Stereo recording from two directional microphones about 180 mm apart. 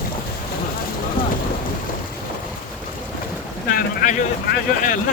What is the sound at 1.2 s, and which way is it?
Boat, 50° left (ahead or behind).